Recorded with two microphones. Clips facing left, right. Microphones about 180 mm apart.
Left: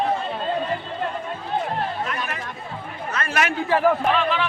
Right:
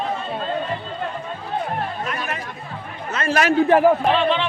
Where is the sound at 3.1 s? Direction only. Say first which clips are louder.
Right 6 dB; 30° right (ahead or behind).